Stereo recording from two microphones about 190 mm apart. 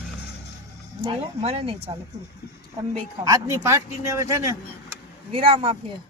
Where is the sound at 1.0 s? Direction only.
30° right (ahead or behind).